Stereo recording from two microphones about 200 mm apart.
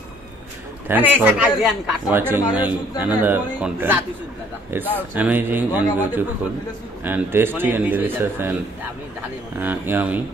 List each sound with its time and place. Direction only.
0.8 s a man's voice: 10° right (ahead or behind)
9.6 s a man's voice: 10° right (ahead or behind)